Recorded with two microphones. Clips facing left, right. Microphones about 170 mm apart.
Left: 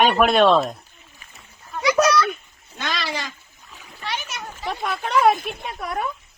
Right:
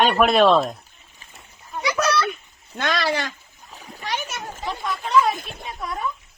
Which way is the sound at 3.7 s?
45° right (ahead or behind).